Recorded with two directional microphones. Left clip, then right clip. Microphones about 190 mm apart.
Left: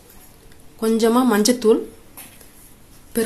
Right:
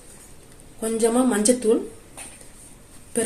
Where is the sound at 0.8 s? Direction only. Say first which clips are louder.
Left 4 dB; 55° left (ahead or behind).